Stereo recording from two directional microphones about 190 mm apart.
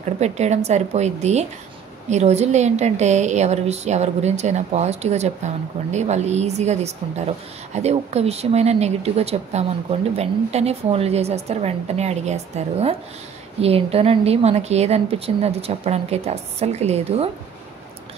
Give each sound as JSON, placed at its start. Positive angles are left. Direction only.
{"t": 0.2, "sound": "a woman's voice", "side_deg": -35}